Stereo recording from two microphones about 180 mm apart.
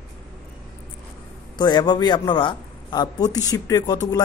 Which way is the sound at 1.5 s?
25° left (ahead or behind).